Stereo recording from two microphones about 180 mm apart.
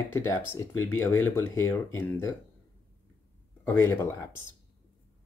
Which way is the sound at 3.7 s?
15° left (ahead or behind).